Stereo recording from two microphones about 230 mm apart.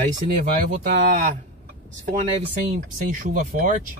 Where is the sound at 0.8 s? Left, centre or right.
Right.